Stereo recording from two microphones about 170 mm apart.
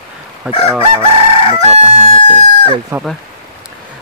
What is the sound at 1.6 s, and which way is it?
Crowing, 40° right (ahead or behind).